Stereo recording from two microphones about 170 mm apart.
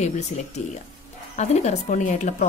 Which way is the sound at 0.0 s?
40° left (ahead or behind).